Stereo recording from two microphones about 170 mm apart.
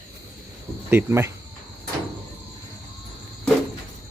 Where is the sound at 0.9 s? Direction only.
15° right (ahead or behind).